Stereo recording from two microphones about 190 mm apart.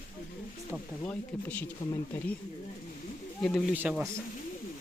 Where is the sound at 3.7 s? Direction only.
5° right (ahead or behind).